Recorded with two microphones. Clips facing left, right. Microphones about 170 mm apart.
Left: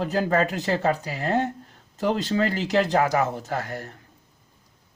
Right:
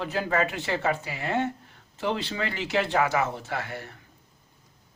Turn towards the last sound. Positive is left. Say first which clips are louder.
# left 4 dB
turn(degrees=40)  # may be behind; listen again after turning